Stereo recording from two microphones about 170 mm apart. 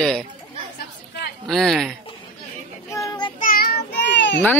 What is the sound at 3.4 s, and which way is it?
Child singing, 60° left (ahead or behind).